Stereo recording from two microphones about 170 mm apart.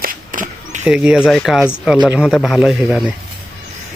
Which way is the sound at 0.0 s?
55° right (ahead or behind).